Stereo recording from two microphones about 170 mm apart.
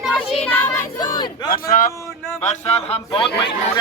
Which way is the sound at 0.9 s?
25° left (ahead or behind).